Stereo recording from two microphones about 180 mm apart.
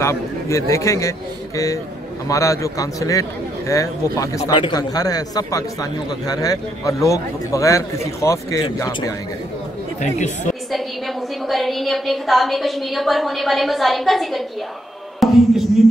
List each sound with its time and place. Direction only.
0.0 s a man's voice: 15° left (ahead or behind)
2.2 s a man's voice: 20° left (ahead or behind)
10.0 s speech: 40° left (ahead or behind)
11.4 s a woman's voice: centre (ahead or behind)
15.2 s music: centre (ahead or behind)
15.8 s a sound: centre (ahead or behind)